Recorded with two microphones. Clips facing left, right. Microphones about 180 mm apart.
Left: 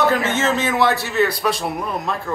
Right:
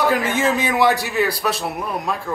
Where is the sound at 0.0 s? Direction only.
10° right (ahead or behind).